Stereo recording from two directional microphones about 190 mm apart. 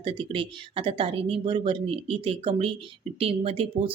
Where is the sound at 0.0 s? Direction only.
25° right (ahead or behind).